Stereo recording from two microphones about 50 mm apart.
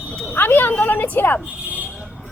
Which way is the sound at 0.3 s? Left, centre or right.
Left.